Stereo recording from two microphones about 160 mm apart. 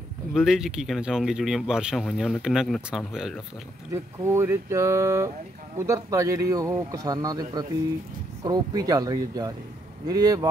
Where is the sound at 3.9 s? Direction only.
15° right (ahead or behind).